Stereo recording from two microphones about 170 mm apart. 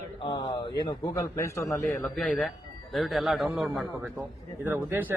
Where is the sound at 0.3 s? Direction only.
25° left (ahead or behind).